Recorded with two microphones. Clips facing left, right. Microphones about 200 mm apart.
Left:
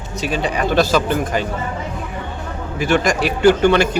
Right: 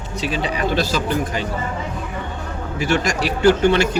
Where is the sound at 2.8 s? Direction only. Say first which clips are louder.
Left 3 dB; 55° left (ahead or behind).